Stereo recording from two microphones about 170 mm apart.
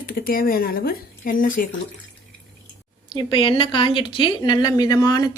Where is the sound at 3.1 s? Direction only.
25° left (ahead or behind).